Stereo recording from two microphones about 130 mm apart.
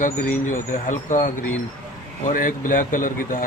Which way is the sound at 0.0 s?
85° left.